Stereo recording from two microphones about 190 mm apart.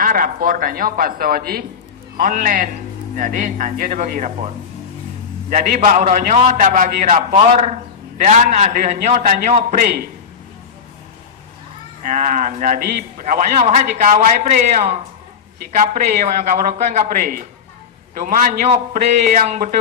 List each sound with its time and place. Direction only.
0.0 s a man's voice: 45° right (ahead or behind)
5.5 s a man's voice: 40° right (ahead or behind)
12.0 s a man's voice: 45° right (ahead or behind)